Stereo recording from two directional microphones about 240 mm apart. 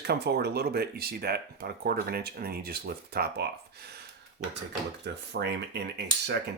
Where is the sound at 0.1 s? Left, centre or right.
Right.